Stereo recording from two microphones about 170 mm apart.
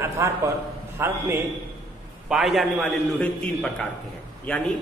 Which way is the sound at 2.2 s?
Centre (ahead or behind).